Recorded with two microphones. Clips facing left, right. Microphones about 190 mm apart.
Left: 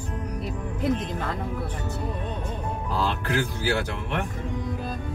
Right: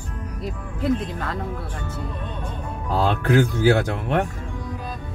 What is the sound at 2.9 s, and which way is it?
Speech, 55° right (ahead or behind).